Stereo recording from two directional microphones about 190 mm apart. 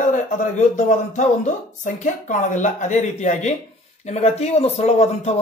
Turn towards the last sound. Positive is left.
turn(degrees=35)  # may be behind; listen again after turning